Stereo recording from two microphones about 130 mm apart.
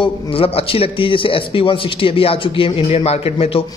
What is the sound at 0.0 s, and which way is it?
A man's voice, 45° left (ahead or behind).